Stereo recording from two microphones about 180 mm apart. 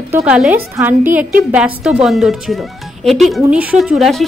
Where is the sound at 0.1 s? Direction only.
5° right (ahead or behind).